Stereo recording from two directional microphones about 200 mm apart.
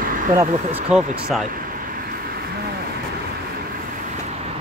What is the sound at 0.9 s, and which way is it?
Speech, 5° right (ahead or behind).